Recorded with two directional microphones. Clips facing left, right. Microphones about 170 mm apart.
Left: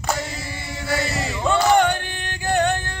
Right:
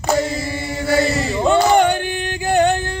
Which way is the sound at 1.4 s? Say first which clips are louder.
Right 3 dB; 15° right (ahead or behind).